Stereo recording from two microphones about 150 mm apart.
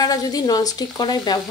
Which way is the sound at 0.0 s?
25° left (ahead or behind).